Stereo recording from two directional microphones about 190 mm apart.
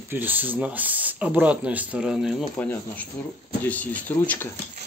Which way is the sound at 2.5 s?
5° left (ahead or behind).